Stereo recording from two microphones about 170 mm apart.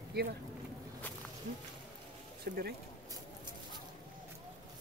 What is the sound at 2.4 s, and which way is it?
Speech, 60° right (ahead or behind).